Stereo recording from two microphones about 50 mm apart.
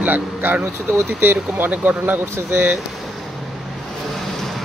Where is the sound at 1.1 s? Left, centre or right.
Right.